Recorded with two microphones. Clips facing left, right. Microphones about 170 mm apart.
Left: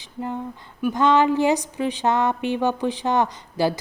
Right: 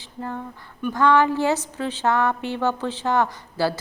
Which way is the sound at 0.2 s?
15° left (ahead or behind).